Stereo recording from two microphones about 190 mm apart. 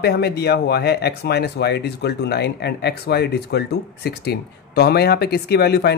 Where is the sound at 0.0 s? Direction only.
60° left (ahead or behind).